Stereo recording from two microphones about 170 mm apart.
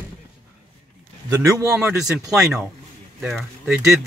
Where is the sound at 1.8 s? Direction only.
5° right (ahead or behind).